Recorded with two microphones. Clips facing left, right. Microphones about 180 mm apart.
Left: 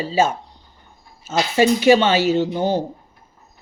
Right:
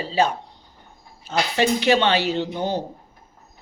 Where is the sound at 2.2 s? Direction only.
45° left (ahead or behind).